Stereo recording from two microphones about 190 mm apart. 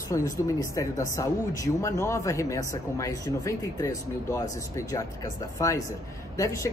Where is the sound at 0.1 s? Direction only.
15° left (ahead or behind).